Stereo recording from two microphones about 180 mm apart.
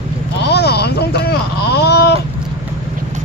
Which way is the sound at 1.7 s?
65° left (ahead or behind).